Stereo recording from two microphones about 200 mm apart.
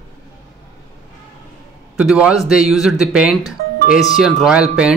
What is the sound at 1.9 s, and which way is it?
Speech, 5° right (ahead or behind).